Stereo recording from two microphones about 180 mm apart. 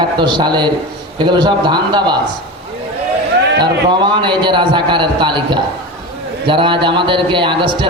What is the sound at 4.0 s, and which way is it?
A man's voice, 25° right (ahead or behind).